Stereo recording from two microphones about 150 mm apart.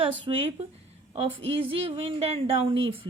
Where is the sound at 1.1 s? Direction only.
35° right (ahead or behind).